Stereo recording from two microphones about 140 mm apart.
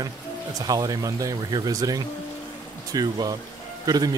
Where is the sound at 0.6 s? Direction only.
25° right (ahead or behind).